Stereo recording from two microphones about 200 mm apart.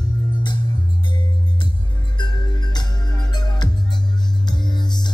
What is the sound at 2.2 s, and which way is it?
Music, 20° left (ahead or behind).